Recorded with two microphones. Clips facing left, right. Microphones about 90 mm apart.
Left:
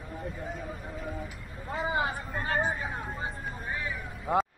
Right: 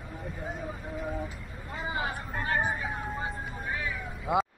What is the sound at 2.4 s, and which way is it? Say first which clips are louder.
Vehicle: even; 30° left (ahead or behind).